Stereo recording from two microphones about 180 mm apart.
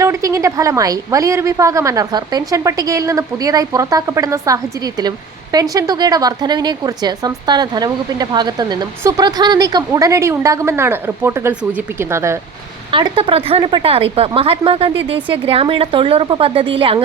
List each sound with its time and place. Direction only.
0.0 s a woman's voice: 15° right (ahead or behind)
12.9 s a woman's voice: 30° right (ahead or behind)